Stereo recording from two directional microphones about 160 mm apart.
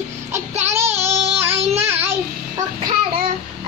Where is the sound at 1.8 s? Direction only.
15° right (ahead or behind).